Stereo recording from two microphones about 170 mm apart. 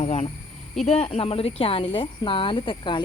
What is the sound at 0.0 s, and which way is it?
Speech, 40° left (ahead or behind).